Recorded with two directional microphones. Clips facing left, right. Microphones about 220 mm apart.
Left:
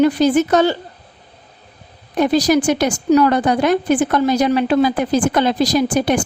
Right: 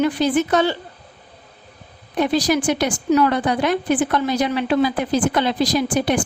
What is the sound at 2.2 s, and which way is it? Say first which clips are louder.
A woman's voice: left 4 dB; 40° left (ahead or behind).